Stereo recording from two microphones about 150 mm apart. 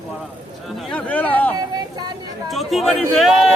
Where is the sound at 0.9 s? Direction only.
10° left (ahead or behind).